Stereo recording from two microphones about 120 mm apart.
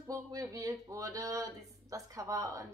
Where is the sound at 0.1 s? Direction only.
30° right (ahead or behind).